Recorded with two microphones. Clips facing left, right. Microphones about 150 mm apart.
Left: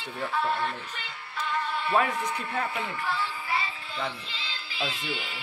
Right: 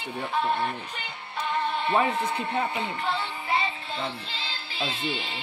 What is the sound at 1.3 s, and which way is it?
Music, 25° right (ahead or behind).